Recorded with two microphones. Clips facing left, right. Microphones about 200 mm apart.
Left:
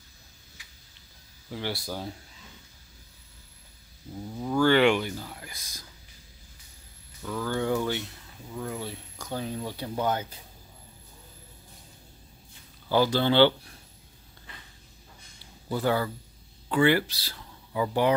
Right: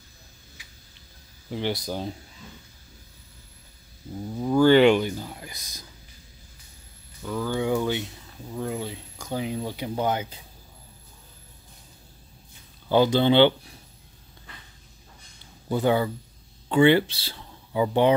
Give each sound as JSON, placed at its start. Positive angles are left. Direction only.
{"t": 1.5, "sound": "speech", "side_deg": -20}
{"t": 4.4, "sound": "speech", "side_deg": -20}
{"t": 7.2, "sound": "speech", "side_deg": -10}
{"t": 12.9, "sound": "speech", "side_deg": -20}
{"t": 15.7, "sound": "speech", "side_deg": -20}